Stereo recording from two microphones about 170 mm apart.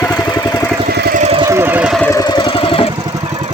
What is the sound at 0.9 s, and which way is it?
Vehicle, 70° right (ahead or behind).